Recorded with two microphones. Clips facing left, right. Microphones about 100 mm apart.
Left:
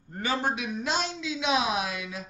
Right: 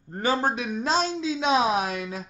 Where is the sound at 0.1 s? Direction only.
40° right (ahead or behind).